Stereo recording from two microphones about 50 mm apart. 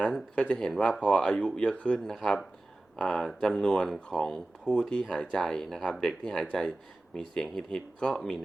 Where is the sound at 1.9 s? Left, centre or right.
Centre.